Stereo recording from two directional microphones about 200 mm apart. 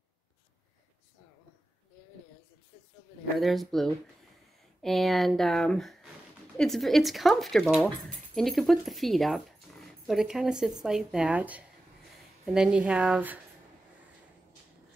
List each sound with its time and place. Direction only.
3.3 s speech: centre (ahead or behind)